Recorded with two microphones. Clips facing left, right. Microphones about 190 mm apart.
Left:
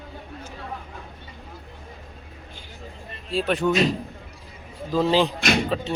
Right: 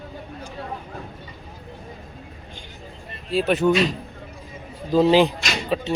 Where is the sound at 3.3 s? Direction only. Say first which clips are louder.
Right 3 dB; 5° right (ahead or behind).